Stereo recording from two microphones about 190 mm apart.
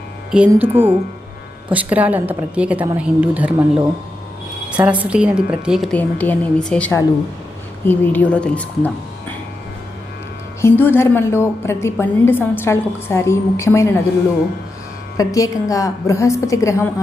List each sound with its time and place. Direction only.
0.3 s a woman's voice: 5° right (ahead or behind)
4.8 s a woman's voice: 5° right (ahead or behind)
10.6 s a woman's voice: 10° left (ahead or behind)
15.2 s a woman's voice: 15° left (ahead or behind)